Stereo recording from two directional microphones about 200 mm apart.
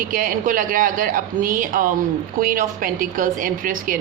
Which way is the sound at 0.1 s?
40° right (ahead or behind).